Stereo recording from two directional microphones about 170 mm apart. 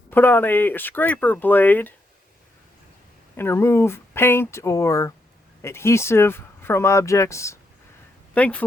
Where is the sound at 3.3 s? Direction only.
15° left (ahead or behind).